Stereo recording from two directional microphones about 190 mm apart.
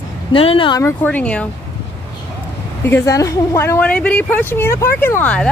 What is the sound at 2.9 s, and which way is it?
Speech, 15° left (ahead or behind).